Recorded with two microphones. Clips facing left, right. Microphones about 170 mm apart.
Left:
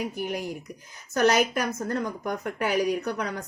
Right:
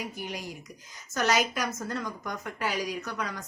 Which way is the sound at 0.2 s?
55° left (ahead or behind).